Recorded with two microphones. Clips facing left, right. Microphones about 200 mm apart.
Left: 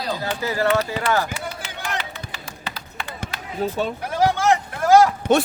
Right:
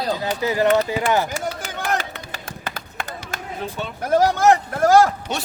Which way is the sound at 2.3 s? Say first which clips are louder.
Right 2 dB; 50° right (ahead or behind).